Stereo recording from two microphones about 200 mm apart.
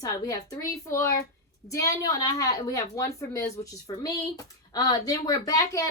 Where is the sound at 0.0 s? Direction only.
15° left (ahead or behind).